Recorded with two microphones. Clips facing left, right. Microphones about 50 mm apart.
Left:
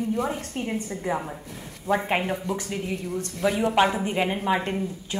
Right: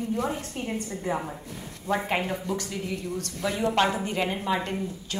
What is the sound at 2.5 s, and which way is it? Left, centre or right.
Speech, left.